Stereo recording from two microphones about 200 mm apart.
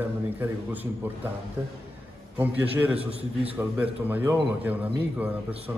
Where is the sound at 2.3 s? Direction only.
10° right (ahead or behind).